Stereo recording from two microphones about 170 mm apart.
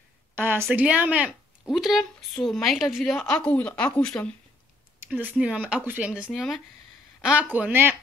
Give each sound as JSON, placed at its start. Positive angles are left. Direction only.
{"t": 0.4, "sound": "speech", "side_deg": -15}
{"t": 5.1, "sound": "speech", "side_deg": -10}